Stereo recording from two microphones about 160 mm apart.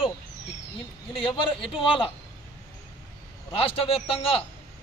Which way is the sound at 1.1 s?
35° left (ahead or behind).